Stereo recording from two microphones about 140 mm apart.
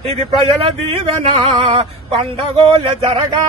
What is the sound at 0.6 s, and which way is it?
Speech, 40° right (ahead or behind).